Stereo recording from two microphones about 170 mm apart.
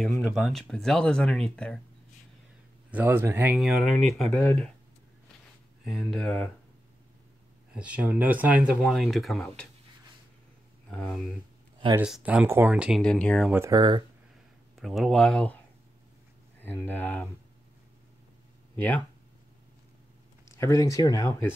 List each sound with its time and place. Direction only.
0.2 s speech: centre (ahead or behind)
2.9 s speech: 10° right (ahead or behind)
3.5 s speech: centre (ahead or behind)
5.9 s speech: 5° left (ahead or behind)
7.7 s speech: 5° right (ahead or behind)
10.9 s speech: 5° left (ahead or behind)
12.0 s speech: 5° right (ahead or behind)
13.0 s speech: 5° left (ahead or behind)
13.5 s speech: 15° right (ahead or behind)
13.7 s speech: 30° right (ahead or behind)
14.8 s speech: centre (ahead or behind)
18.8 s speech: 10° left (ahead or behind)
20.5 s speech: 20° left (ahead or behind)